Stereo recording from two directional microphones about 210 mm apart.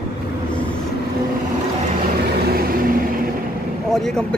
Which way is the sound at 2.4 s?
45° right (ahead or behind).